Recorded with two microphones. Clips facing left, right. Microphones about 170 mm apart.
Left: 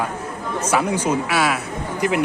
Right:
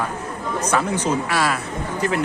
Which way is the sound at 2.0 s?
15° left (ahead or behind).